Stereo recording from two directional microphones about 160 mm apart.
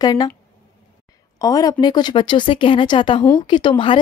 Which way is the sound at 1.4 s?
25° left (ahead or behind).